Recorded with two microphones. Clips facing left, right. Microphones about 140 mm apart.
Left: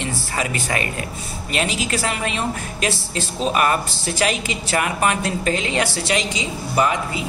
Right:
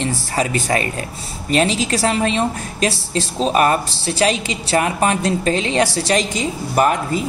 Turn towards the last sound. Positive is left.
turn(degrees=-50)  # may be behind; listen again after turning